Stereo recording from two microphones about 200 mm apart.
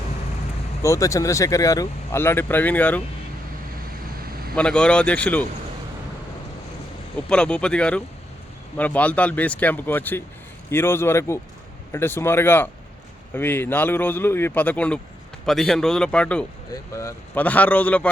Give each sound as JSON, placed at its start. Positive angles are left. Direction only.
{"t": 0.8, "sound": "speech", "side_deg": 15}
{"t": 4.5, "sound": "speech", "side_deg": 5}
{"t": 7.3, "sound": "speech", "side_deg": 5}